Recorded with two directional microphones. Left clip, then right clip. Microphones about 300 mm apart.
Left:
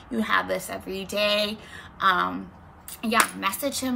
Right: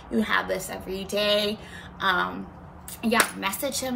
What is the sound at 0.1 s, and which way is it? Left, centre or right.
Speech, centre.